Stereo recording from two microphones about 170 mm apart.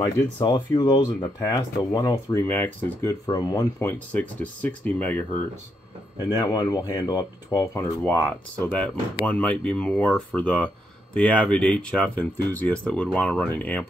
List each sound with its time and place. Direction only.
0.0 s speech: 25° left (ahead or behind)
4.1 s speech: 10° left (ahead or behind)
6.1 s speech: 20° left (ahead or behind)
8.5 s speech: 5° left (ahead or behind)